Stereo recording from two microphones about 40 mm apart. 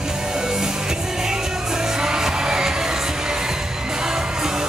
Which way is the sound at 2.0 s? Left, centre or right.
Centre.